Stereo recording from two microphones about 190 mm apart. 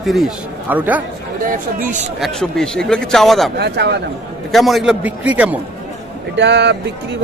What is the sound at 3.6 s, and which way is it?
Speech, 60° right (ahead or behind).